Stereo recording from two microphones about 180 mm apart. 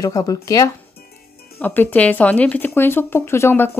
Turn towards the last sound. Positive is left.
turn(degrees=15)  # may be behind; listen again after turning